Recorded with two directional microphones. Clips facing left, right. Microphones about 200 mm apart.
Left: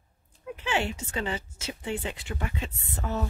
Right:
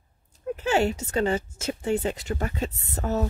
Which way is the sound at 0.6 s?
40° right (ahead or behind).